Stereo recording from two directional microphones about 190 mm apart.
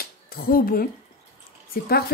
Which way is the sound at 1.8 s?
55° left (ahead or behind).